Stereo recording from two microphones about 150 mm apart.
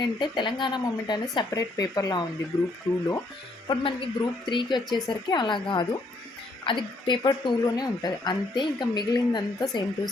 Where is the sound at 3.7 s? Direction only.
35° left (ahead or behind).